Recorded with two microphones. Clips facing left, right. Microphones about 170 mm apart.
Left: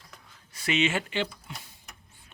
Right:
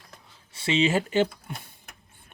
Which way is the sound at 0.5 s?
30° right (ahead or behind).